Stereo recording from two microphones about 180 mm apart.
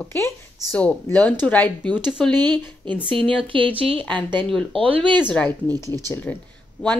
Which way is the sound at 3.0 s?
30° right (ahead or behind).